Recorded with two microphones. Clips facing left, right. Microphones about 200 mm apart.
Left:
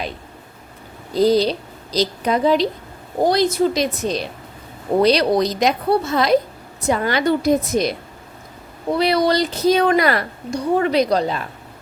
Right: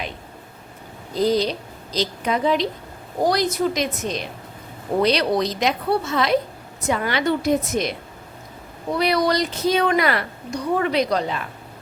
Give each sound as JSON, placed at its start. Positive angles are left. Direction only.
{"t": 1.1, "sound": "a woman's voice", "side_deg": 35}
{"t": 9.0, "sound": "a woman's voice", "side_deg": 30}